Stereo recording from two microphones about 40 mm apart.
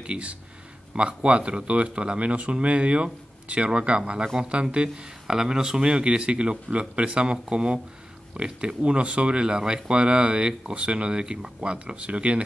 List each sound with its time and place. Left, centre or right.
0.0 s speech: right
4.8 s speech: centre; by 12.4 s right